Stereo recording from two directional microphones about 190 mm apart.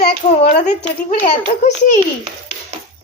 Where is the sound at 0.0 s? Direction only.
35° left (ahead or behind).